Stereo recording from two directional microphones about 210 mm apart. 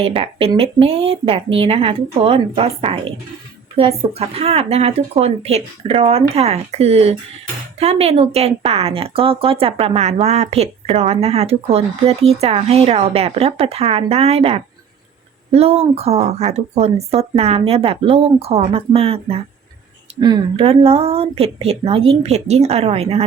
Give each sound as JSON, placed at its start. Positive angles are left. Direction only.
{"t": 0.0, "sound": "a woman's voice", "side_deg": -25}